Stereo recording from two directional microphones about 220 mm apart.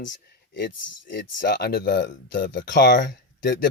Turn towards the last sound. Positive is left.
turn(degrees=50)  # may be behind; listen again after turning